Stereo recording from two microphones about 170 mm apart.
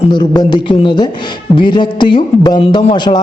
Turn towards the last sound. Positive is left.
turn(degrees=30)  # may be behind; listen again after turning